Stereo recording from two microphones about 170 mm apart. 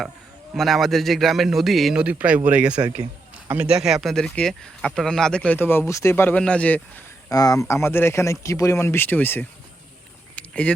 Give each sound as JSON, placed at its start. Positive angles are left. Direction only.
{"t": 0.5, "sound": "speech", "side_deg": 0}
{"t": 7.3, "sound": "speech", "side_deg": 20}
{"t": 10.3, "sound": "a sound", "side_deg": 10}